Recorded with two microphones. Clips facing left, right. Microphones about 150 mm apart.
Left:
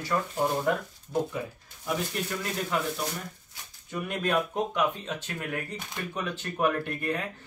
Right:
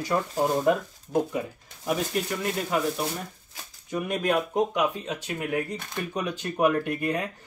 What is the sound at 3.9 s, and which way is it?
Speech, 15° right (ahead or behind).